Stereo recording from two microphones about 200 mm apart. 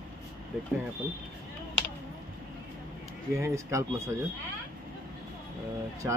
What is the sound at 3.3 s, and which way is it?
Speech, 15° right (ahead or behind).